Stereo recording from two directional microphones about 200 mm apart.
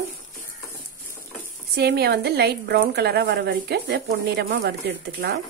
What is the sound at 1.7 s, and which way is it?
A woman's voice, 55° right (ahead or behind).